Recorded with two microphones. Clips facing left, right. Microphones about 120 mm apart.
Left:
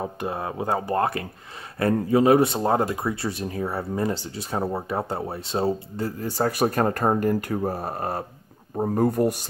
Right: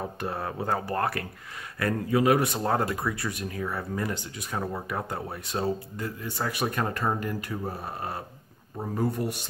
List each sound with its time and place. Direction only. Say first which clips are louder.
0.0 s speech: left 3 dB; 20° left (ahead or behind); by 9.5 s 45° left (ahead or behind)